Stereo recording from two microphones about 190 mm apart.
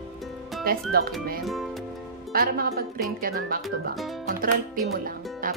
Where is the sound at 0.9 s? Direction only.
55° right (ahead or behind).